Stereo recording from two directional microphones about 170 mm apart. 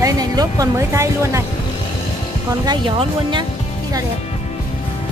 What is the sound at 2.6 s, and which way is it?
Speech, 25° right (ahead or behind).